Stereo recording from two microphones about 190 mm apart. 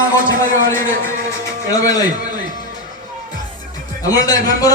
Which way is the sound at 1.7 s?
20° left (ahead or behind).